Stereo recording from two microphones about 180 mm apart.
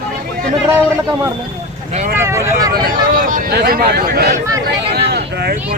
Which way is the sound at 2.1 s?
15° right (ahead or behind).